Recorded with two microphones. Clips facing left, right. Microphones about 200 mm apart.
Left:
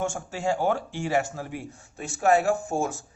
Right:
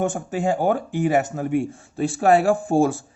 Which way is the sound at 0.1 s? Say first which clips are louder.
Right 5 dB; 15° right (ahead or behind).